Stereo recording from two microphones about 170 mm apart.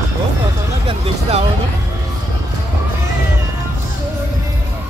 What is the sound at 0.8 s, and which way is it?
Speech, 35° right (ahead or behind).